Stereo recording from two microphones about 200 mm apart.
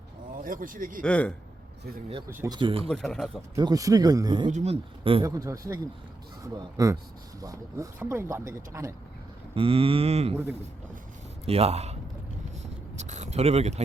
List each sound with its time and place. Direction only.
0.4 s speech: 45° right (ahead or behind)
1.0 s speech: 5° left (ahead or behind)
2.3 s speech: 15° right (ahead or behind)
2.6 s speech: 25° right (ahead or behind)
2.8 s speech: 5° left (ahead or behind)
3.5 s speech: 20° right (ahead or behind)
4.5 s speech: 30° right (ahead or behind)
5.2 s speech: 15° right (ahead or behind)
9.6 s speech: 30° right (ahead or behind)
11.4 s speech: 30° right (ahead or behind)
13.0 s a sound: 35° right (ahead or behind)